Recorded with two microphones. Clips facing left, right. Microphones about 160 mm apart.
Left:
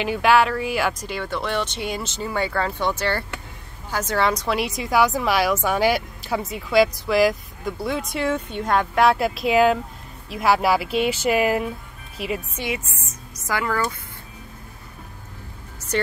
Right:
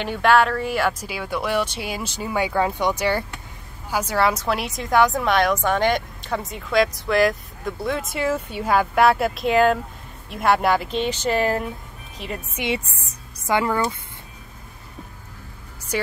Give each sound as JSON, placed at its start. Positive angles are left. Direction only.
{"t": 0.0, "sound": "a woman's voice", "side_deg": 5}
{"t": 13.5, "sound": "speech", "side_deg": -25}
{"t": 15.9, "sound": "speech", "side_deg": -10}